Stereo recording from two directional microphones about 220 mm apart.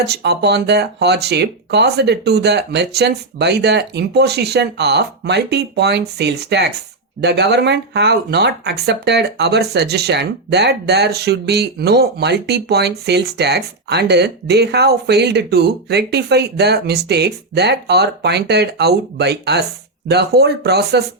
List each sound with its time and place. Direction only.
0.0 s speech: 50° right (ahead or behind)